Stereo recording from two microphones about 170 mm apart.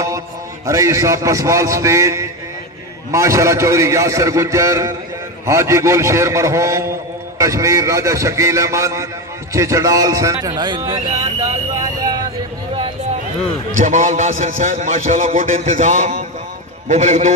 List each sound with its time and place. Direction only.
0.7 s a man's voice: 20° right (ahead or behind)
13.7 s a man's voice: 50° right (ahead or behind)